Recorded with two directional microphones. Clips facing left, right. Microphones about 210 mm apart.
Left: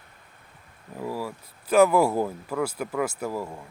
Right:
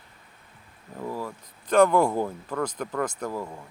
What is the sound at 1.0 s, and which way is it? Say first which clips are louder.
Speech: left 1 dB; 10° left (ahead or behind).